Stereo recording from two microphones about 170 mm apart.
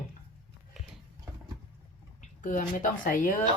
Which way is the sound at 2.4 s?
50° left (ahead or behind).